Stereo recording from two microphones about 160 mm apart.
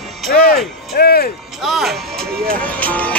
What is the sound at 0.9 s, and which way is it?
Speech, 80° left.